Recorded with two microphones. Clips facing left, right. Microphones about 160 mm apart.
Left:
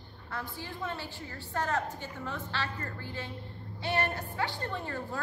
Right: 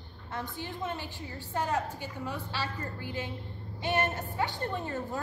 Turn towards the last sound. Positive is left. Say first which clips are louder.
# right 2 dB
turn(degrees=-20)  # may be behind; listen again after turning